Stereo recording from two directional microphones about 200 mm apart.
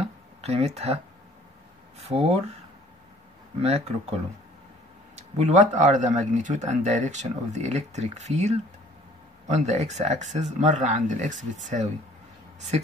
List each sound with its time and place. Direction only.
0.4 s speech: 30° right (ahead or behind)
2.0 s speech: 30° right (ahead or behind)
3.6 s speech: 30° right (ahead or behind)